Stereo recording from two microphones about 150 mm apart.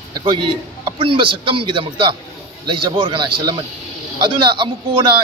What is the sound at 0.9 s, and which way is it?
A man's voice, 35° right (ahead or behind).